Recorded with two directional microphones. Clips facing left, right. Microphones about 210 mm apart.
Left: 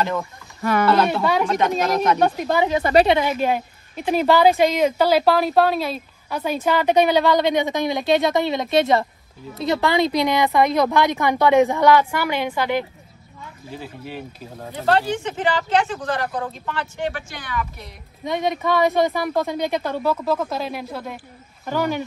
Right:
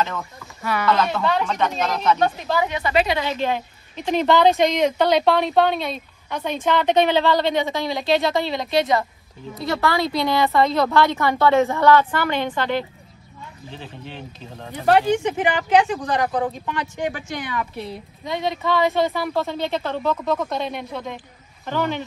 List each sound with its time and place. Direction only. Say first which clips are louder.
0.6 s speech: left 3 dB; 45° left (ahead or behind)
1.2 s a woman's voice: left 2 dB; 10° left (ahead or behind)
1.7 s speech: left 4 dB; 45° left (ahead or behind)
2.0 s a woman's voice: left 2 dB; 10° left (ahead or behind)
2.8 s a woman's voice: left 7 dB; 40° left (ahead or behind)
3.3 s a woman's voice: left 2 dB; 10° left (ahead or behind)
14.9 s speech: right 3 dB; 15° right (ahead or behind)
18.2 s a woman's voice: left 2 dB; 20° left (ahead or behind)